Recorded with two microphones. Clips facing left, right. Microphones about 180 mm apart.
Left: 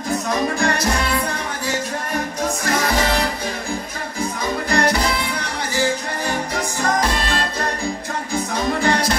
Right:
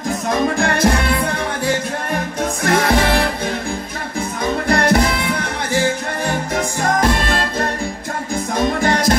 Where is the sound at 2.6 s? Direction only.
60° right (ahead or behind).